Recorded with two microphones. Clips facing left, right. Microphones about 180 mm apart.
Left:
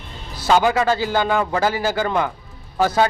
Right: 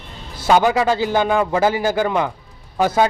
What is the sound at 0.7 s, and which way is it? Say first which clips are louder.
Speech: right 1 dB; 10° right (ahead or behind).